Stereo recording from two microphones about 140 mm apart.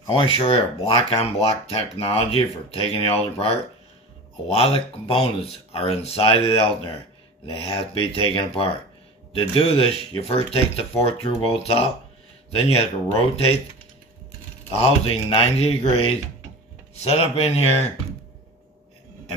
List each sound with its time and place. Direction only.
0.0 s speech: 35° left (ahead or behind)
14.8 s speech: 40° left (ahead or behind)